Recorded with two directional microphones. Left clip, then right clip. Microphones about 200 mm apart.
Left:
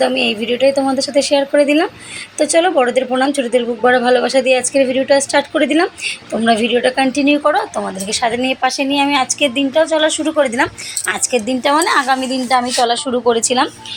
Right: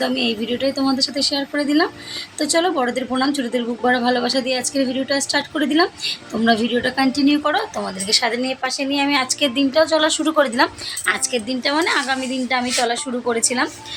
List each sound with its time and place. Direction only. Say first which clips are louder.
0.0 s a woman's voice: left 6 dB; 10° left (ahead or behind)
8.4 s speech: left 6 dB; 15° left (ahead or behind)
12.9 s a woman's voice: left 7 dB; 15° left (ahead or behind)